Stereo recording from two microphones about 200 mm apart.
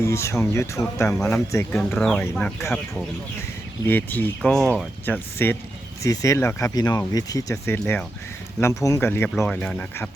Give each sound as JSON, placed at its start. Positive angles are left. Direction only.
{"t": 0.0, "sound": "speech", "side_deg": 15}
{"t": 3.8, "sound": "speech", "side_deg": 10}